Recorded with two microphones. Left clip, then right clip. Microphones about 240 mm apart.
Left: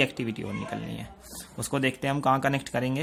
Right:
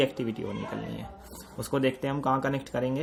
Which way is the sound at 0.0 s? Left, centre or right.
Left.